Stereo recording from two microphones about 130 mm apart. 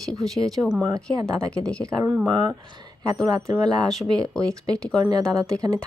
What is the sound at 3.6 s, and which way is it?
Speech, 5° left (ahead or behind).